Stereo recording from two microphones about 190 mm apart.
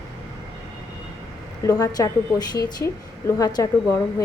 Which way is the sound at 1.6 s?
20° left (ahead or behind).